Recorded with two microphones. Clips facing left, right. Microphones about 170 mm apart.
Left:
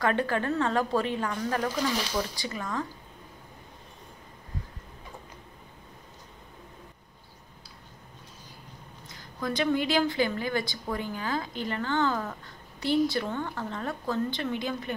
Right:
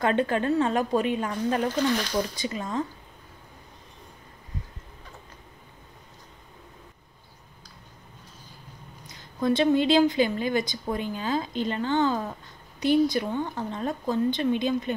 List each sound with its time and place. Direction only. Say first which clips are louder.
0.0 s a woman's voice: right 3 dB; 20° right (ahead or behind)
9.0 s a woman's voice: right 7 dB; 20° right (ahead or behind)